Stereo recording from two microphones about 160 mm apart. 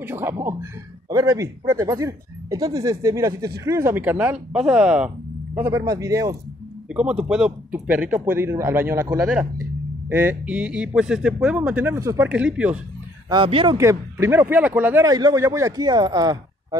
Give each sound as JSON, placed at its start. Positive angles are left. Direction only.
{"t": 0.0, "sound": "speech", "side_deg": -15}
{"t": 6.9, "sound": "speech", "side_deg": -5}
{"t": 12.3, "sound": "speech", "side_deg": -5}
{"t": 13.3, "sound": "speech", "side_deg": -35}
{"t": 13.7, "sound": "speech", "side_deg": -15}
{"t": 15.0, "sound": "speech", "side_deg": -25}